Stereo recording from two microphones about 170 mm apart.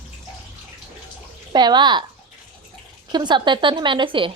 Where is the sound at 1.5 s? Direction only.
25° right (ahead or behind).